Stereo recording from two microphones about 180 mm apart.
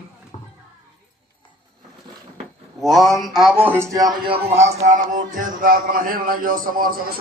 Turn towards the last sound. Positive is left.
turn(degrees=-50)  # may be behind; listen again after turning